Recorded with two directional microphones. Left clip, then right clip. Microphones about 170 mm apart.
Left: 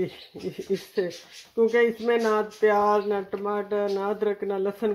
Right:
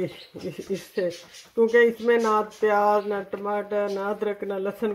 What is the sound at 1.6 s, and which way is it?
Speech, 15° left (ahead or behind).